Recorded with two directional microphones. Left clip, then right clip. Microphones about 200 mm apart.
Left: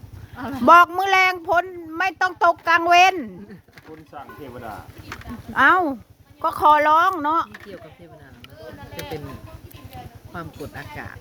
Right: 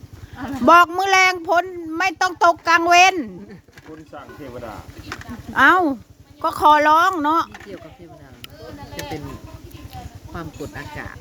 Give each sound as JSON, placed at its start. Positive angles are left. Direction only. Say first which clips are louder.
{"t": 0.3, "sound": "a sound", "louder": "right 1 dB", "side_deg": 35}
{"t": 0.6, "sound": "speech", "louder": "even", "side_deg": 0}
{"t": 5.5, "sound": "speech", "louder": "right 2 dB", "side_deg": -5}
{"t": 10.3, "sound": "speech", "louder": "right 2 dB", "side_deg": 0}